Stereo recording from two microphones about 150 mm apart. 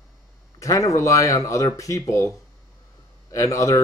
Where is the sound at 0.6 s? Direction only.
20° left (ahead or behind).